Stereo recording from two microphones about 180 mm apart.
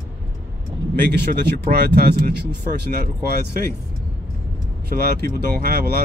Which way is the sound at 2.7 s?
60° right (ahead or behind).